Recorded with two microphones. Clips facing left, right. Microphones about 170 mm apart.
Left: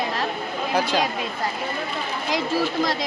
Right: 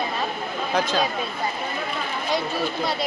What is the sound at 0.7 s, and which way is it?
Speech, 10° left (ahead or behind).